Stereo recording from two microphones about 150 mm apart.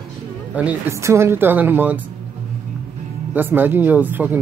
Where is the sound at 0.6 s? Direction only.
15° right (ahead or behind).